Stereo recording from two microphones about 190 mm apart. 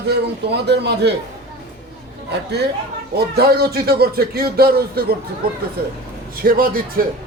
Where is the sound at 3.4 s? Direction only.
55° right (ahead or behind).